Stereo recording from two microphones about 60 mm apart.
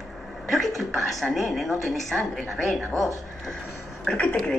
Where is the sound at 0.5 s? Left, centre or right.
Centre.